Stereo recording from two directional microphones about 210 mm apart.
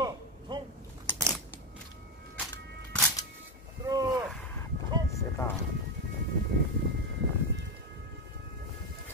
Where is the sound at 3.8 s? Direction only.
15° right (ahead or behind).